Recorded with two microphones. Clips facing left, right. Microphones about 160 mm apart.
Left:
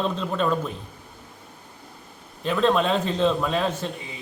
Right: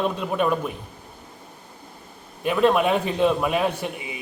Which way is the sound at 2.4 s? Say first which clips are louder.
Right 2 dB; 15° right (ahead or behind).